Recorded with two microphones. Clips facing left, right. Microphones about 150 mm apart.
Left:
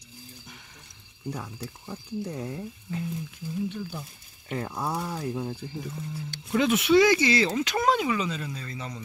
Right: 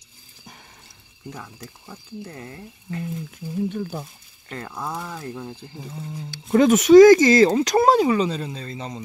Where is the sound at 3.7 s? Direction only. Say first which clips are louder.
Right 6 dB; 50° right (ahead or behind).